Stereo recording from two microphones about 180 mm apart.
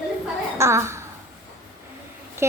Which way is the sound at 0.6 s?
15° right (ahead or behind).